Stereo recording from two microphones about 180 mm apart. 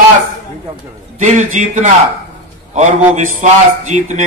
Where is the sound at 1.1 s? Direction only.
40° right (ahead or behind).